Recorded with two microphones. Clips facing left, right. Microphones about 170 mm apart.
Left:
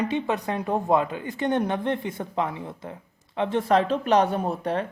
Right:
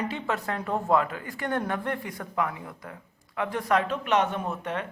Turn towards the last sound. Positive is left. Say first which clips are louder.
# left 5 dB
turn(degrees=35)  # may be behind; listen again after turning